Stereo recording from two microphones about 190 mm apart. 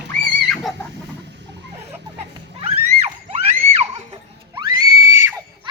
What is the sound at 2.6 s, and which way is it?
Screaming, 30° right (ahead or behind).